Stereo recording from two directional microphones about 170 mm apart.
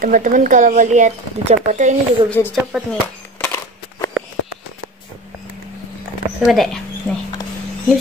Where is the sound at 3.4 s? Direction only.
15° left (ahead or behind).